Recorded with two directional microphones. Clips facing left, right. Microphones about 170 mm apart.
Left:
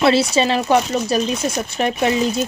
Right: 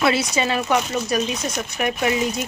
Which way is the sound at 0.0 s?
30° left (ahead or behind).